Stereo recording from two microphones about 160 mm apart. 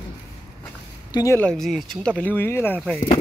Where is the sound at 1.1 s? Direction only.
20° left (ahead or behind).